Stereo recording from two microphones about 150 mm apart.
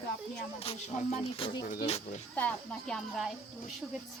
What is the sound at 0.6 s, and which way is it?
Speech, 45° left (ahead or behind).